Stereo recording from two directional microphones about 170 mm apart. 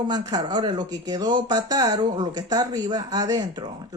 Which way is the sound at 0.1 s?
25° right (ahead or behind).